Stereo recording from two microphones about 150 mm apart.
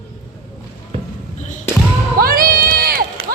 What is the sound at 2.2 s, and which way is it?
Crowd, 75° right (ahead or behind).